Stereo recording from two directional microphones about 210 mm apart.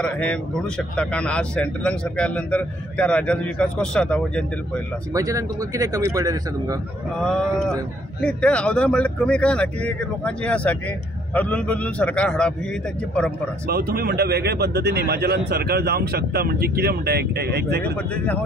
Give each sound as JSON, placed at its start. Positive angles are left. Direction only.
{"t": 0.0, "sound": "speech", "side_deg": 5}
{"t": 5.1, "sound": "speech", "side_deg": -15}
{"t": 7.2, "sound": "a man's voice", "side_deg": 0}
{"t": 13.7, "sound": "speech", "side_deg": -50}
{"t": 18.1, "sound": "a man's voice", "side_deg": 5}